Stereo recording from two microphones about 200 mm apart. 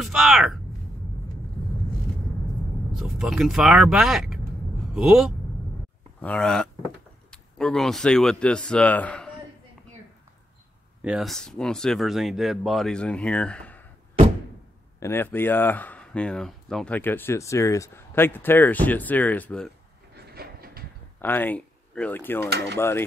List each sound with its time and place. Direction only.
0.0 s a sound: centre (ahead or behind)
3.0 s speech: centre (ahead or behind)
11.0 s speech: 5° right (ahead or behind)
15.0 s speech: 10° left (ahead or behind)
20.3 s a sound: 50° right (ahead or behind)
21.2 s speech: 10° left (ahead or behind)